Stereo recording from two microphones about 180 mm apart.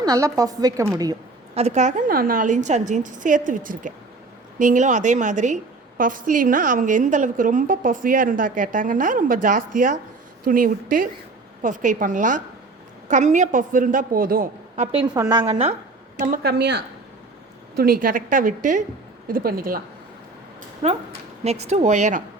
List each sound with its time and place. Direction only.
0.0 s speech: 20° right (ahead or behind)
1.5 s a woman's voice: 40° right (ahead or behind)
15.1 s speech: 20° right (ahead or behind)
16.1 s speech: 50° right (ahead or behind); by 16.8 s 70° right (ahead or behind)
17.7 s a woman's voice: 55° right (ahead or behind)
19.3 s speech: 55° right (ahead or behind)
20.8 s a woman's voice: 35° right (ahead or behind)